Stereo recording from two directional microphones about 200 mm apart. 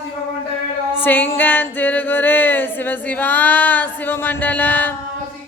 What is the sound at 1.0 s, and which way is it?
Music, 10° left (ahead or behind).